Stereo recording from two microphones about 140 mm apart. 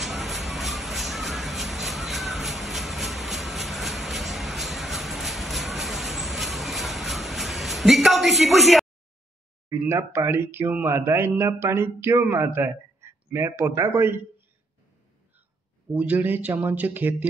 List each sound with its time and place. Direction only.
0.0 s a sound: centre (ahead or behind)
9.7 s speech: 20° right (ahead or behind)
15.9 s speech: 10° right (ahead or behind)